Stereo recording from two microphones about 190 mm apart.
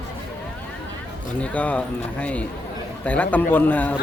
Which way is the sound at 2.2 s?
5° left (ahead or behind).